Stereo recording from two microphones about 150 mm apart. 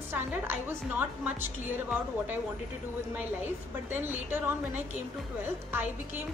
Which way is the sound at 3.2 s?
15° right (ahead or behind).